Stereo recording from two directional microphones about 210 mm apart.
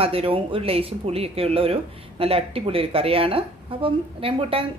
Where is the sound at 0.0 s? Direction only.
25° right (ahead or behind).